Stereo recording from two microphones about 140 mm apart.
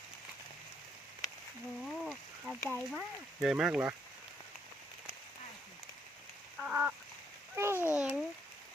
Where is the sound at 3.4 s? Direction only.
5° right (ahead or behind).